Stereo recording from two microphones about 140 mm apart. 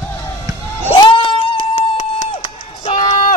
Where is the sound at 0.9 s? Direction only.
35° left (ahead or behind).